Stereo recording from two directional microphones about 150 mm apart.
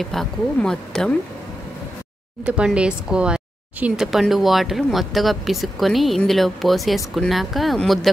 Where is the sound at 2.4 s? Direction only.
5° right (ahead or behind).